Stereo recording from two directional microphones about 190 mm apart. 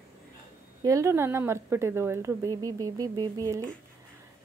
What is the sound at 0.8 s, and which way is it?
Speech, 15° right (ahead or behind).